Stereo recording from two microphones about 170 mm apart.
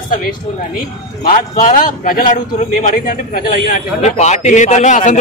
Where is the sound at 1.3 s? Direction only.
50° left (ahead or behind).